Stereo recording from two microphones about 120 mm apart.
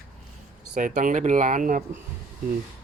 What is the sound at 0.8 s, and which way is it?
Speech, 90° right.